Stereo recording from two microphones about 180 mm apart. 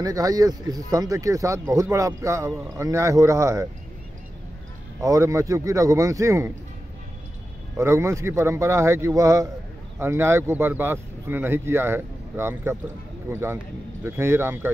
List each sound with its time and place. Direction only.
0.0 s speech: 20° right (ahead or behind)
5.0 s speech: 15° right (ahead or behind)
7.7 s speech: 15° right (ahead or behind)